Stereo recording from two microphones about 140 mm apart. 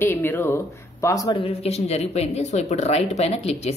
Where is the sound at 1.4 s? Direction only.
45° left (ahead or behind).